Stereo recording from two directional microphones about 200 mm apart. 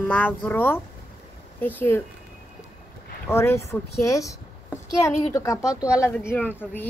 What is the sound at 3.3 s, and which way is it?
A woman's voice, 15° left (ahead or behind).